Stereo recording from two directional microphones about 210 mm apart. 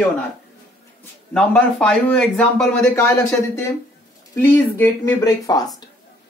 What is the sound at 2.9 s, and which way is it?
Speech, 15° left (ahead or behind).